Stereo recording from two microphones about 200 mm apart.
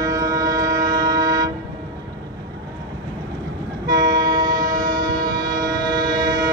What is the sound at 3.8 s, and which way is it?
Train, 20° right (ahead or behind).